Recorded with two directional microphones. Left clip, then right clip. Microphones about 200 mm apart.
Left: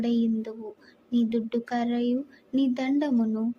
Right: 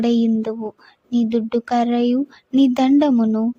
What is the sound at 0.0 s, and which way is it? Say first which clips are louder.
Speech: right 9 dB; 50° right (ahead or behind).